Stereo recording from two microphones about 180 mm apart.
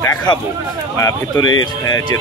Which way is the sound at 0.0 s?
15° left (ahead or behind).